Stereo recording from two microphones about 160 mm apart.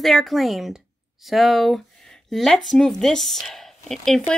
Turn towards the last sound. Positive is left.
turn(degrees=0)  # may be behind; listen again after turning